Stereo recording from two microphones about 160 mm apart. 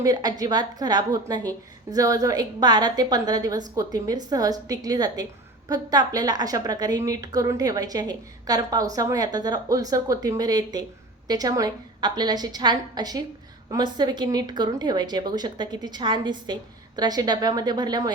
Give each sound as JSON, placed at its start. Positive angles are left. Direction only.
{"t": 0.0, "sound": "a woman's voice", "side_deg": -25}